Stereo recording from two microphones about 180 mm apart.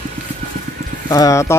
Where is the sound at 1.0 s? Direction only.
20° left (ahead or behind).